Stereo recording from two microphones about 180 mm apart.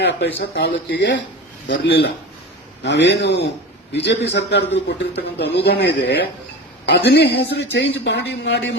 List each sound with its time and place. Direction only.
0.3 s a man's voice: 70° left (ahead or behind)